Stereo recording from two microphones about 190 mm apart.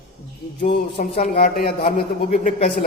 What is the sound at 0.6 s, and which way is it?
A man's voice, 45° left (ahead or behind).